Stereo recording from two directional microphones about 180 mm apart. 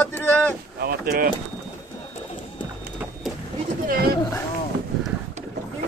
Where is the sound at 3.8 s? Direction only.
55° right (ahead or behind).